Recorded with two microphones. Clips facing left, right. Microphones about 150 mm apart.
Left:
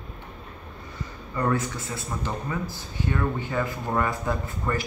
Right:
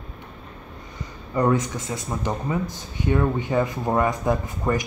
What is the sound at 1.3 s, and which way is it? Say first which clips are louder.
A man's voice: right 5 dB; 20° right (ahead or behind).